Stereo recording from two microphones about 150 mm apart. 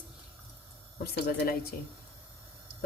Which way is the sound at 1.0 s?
90° left.